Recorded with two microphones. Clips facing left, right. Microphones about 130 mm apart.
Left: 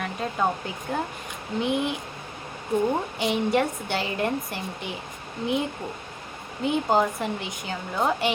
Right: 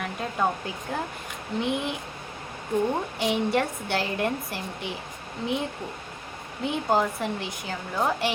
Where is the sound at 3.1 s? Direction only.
Centre (ahead or behind).